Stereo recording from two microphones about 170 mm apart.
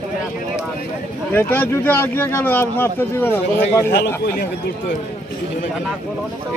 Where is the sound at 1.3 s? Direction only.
10° left (ahead or behind).